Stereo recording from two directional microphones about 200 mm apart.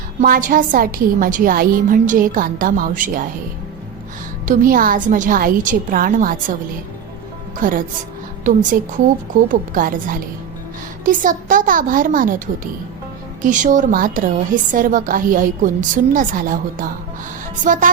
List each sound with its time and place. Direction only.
0.2 s a woman's voice: 40° right (ahead or behind)
4.4 s a woman's voice: 45° right (ahead or behind)
7.6 s a woman's voice: 45° right (ahead or behind)
13.4 s a woman's voice: 40° right (ahead or behind)